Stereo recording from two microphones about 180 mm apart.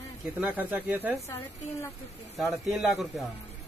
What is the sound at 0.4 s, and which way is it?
Speech, 10° right (ahead or behind).